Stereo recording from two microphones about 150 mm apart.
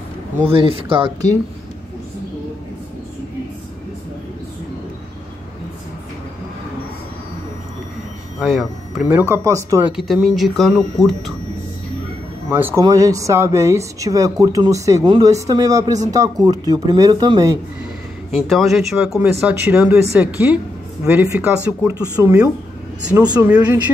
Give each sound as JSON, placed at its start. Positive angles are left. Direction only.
{"t": 0.5, "sound": "speech", "side_deg": -40}
{"t": 8.4, "sound": "speech", "side_deg": 0}
{"t": 9.0, "sound": "speech", "side_deg": -15}
{"t": 9.8, "sound": "speech", "side_deg": -5}
{"t": 12.4, "sound": "speech", "side_deg": -15}
{"t": 18.3, "sound": "speech", "side_deg": 0}
{"t": 23.4, "sound": "speech", "side_deg": -15}